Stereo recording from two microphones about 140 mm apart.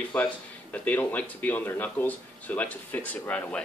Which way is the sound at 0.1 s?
10° left (ahead or behind).